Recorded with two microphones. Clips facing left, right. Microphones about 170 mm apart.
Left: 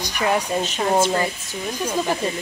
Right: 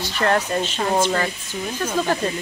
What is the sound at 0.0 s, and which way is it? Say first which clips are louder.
Speech: right 1 dB; 10° left (ahead or behind).